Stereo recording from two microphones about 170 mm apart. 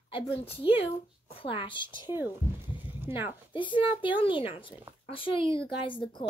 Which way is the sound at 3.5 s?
30° left (ahead or behind).